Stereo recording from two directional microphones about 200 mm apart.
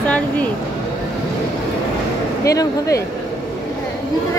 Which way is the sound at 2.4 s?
15° left (ahead or behind).